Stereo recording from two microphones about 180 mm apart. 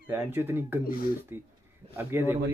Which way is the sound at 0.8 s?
55° left (ahead or behind).